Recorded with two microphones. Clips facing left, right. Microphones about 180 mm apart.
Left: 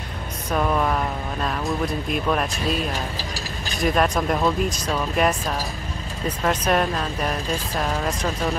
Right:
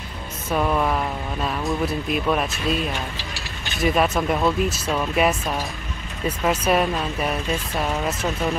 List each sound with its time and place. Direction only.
0.5 s speech: 5° right (ahead or behind)
2.9 s mechanisms: 40° left (ahead or behind)
3.8 s speech: 5° right (ahead or behind)